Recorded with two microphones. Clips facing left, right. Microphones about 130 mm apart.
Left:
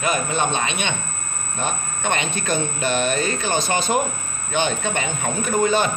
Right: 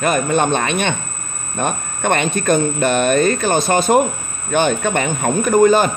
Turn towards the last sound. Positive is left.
turn(degrees=-45)  # may be behind; listen again after turning